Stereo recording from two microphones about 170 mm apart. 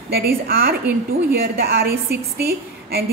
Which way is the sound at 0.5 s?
60° right (ahead or behind).